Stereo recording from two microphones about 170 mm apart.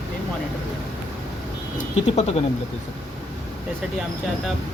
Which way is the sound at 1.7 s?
40° left (ahead or behind).